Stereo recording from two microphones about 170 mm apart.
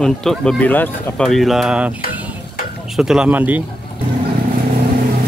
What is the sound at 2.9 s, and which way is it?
Speech, 5° right (ahead or behind).